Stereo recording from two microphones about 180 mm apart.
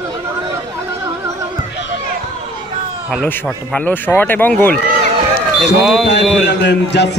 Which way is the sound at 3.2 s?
10° left (ahead or behind).